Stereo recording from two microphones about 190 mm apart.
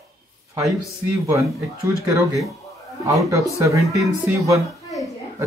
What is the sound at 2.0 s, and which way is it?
Speech, 15° right (ahead or behind).